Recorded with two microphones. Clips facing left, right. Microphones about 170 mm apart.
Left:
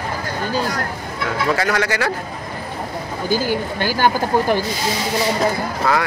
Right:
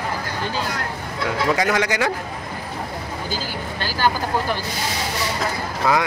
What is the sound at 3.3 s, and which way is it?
Speech, 15° left (ahead or behind).